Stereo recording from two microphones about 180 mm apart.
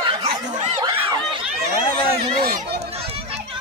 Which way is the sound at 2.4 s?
55° right (ahead or behind).